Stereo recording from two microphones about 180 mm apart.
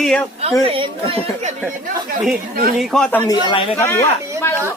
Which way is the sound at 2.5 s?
55° right (ahead or behind).